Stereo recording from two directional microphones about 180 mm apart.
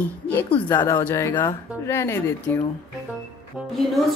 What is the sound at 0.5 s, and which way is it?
Speech, 25° left (ahead or behind).